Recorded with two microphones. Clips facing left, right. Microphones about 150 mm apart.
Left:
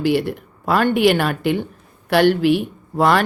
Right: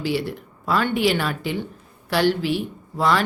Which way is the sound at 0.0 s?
55° left (ahead or behind).